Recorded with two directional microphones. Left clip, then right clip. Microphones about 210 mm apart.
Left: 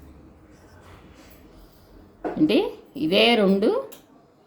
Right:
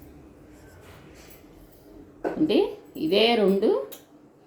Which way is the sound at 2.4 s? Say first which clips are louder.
Left 1 dB; 55° left (ahead or behind).